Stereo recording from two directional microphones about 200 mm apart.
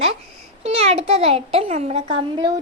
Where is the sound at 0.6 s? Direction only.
30° right (ahead or behind).